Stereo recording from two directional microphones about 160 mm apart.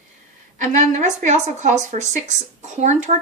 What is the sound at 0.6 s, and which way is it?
A woman's voice, 50° right (ahead or behind).